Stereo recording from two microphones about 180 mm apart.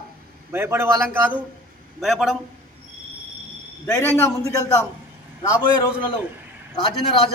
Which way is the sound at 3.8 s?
15° left (ahead or behind).